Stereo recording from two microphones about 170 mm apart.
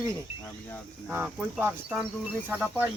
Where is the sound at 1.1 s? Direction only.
10° right (ahead or behind).